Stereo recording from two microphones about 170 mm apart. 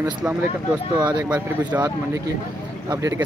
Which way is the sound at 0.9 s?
25° right (ahead or behind).